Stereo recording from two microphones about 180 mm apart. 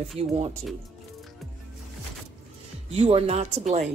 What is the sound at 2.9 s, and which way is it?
Speech, 35° right (ahead or behind).